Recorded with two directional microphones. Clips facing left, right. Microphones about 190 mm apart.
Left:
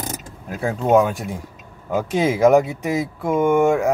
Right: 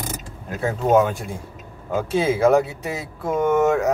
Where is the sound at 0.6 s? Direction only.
10° left (ahead or behind).